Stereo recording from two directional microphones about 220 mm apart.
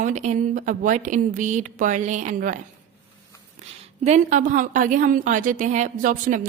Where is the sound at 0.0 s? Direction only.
35° right (ahead or behind).